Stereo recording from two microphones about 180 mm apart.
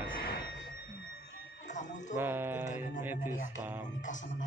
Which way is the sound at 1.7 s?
45° left (ahead or behind).